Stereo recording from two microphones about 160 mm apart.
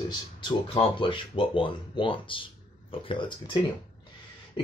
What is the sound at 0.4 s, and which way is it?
Speech, 30° left (ahead or behind).